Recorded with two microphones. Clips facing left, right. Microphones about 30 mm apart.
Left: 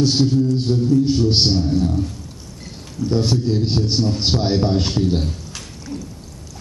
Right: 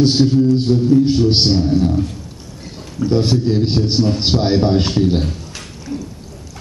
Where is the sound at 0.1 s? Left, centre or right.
Right.